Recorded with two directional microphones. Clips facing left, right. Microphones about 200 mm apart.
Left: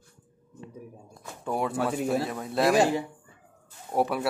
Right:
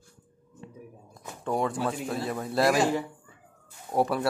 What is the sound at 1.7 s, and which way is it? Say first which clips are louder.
Speech: left 3 dB; 50° left (ahead or behind).